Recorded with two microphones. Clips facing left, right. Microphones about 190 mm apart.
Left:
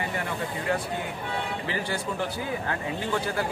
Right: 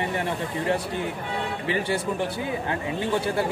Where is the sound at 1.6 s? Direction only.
25° right (ahead or behind).